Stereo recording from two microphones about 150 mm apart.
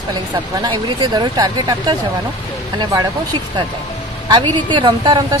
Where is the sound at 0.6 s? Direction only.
30° right (ahead or behind).